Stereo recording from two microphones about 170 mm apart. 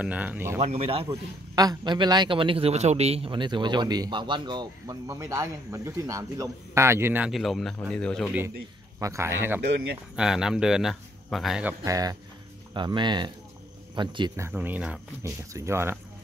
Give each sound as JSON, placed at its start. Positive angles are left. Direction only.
{"t": 0.0, "sound": "speech", "side_deg": -10}
{"t": 0.6, "sound": "speech", "side_deg": -40}
{"t": 1.0, "sound": "a man's voice", "side_deg": -20}
{"t": 7.2, "sound": "speech", "side_deg": 0}
{"t": 9.0, "sound": "speech", "side_deg": -15}
{"t": 9.6, "sound": "speech", "side_deg": -85}
{"t": 10.1, "sound": "speech", "side_deg": -5}
{"t": 11.8, "sound": "a man's voice", "side_deg": -20}
{"t": 14.3, "sound": "speech", "side_deg": -15}